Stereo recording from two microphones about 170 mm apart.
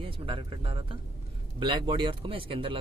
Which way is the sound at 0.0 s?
30° right (ahead or behind).